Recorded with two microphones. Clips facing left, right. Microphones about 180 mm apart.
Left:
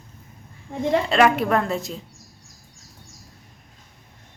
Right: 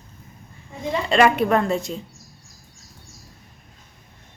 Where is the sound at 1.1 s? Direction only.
Centre (ahead or behind).